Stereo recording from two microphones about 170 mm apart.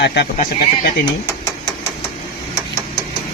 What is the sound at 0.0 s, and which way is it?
Speech, 85° left.